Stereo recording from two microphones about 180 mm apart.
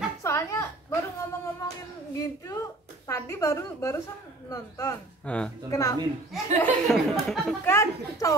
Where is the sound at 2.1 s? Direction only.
15° left (ahead or behind).